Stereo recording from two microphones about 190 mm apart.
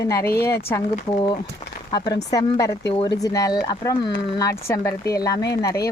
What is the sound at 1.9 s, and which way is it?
Speech, 20° left (ahead or behind).